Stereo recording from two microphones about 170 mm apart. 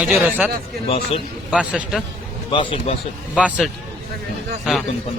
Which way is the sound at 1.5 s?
5° right (ahead or behind).